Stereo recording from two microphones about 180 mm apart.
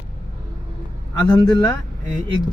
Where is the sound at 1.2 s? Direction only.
10° left (ahead or behind).